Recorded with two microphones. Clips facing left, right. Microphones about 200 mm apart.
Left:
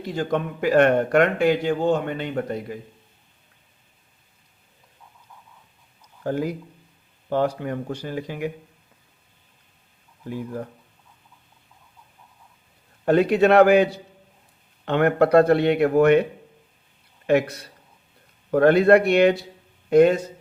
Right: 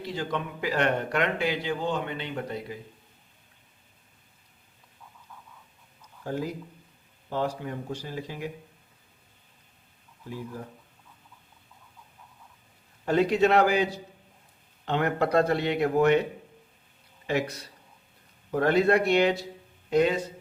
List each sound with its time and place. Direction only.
0.0 s speech: 50° left (ahead or behind)
6.2 s speech: 60° left (ahead or behind)
13.1 s speech: 60° left (ahead or behind)
17.2 s speech: 60° left (ahead or behind)
18.5 s speech: 60° left (ahead or behind)